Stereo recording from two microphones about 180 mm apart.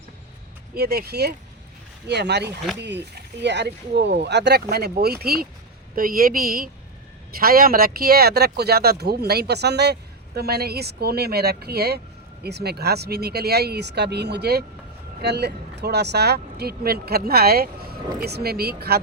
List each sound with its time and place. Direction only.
0.7 s a woman's voice: 60° right (ahead or behind)